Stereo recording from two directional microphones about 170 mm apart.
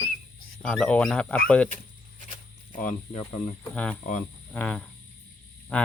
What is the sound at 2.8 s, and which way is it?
Speech, 40° left (ahead or behind).